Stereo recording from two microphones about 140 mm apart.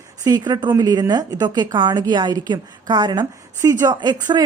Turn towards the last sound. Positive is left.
turn(degrees=-30)  # may be behind; listen again after turning